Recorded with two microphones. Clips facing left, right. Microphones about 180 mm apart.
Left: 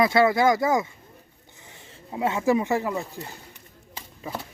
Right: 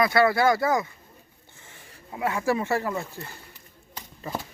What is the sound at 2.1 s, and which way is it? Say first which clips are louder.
Speech: left 3 dB; 25° left (ahead or behind).